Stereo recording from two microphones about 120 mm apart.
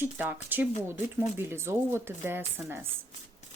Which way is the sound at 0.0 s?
15° right (ahead or behind).